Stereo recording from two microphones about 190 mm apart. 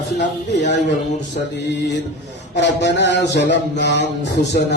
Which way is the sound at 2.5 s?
65° left (ahead or behind).